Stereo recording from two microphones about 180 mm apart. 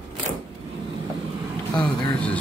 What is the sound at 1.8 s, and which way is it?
Speech, 25° left (ahead or behind).